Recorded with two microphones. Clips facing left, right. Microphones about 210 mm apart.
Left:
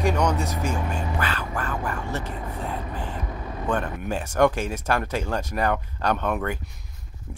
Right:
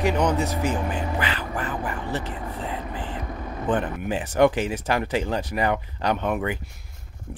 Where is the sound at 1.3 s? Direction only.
15° right (ahead or behind).